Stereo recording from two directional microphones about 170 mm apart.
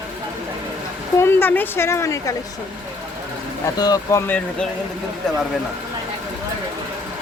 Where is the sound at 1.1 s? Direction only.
15° left (ahead or behind).